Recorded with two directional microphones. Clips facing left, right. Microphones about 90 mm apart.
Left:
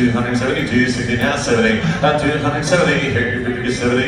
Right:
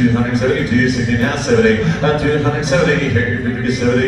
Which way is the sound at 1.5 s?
10° right (ahead or behind).